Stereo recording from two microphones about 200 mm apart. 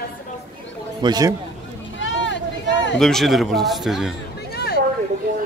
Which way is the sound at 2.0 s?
70° left (ahead or behind).